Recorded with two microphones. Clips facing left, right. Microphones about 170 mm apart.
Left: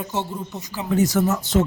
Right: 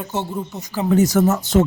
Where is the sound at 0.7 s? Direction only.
45° right (ahead or behind).